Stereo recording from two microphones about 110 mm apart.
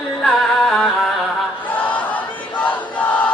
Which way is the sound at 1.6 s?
15° left (ahead or behind).